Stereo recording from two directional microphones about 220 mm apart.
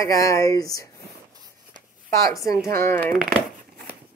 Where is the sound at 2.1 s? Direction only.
15° left (ahead or behind).